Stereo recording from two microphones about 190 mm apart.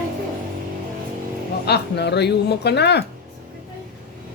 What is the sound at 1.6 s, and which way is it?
A woman's voice, 60° left (ahead or behind).